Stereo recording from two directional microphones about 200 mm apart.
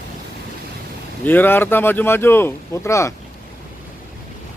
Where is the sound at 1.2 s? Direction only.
10° left (ahead or behind).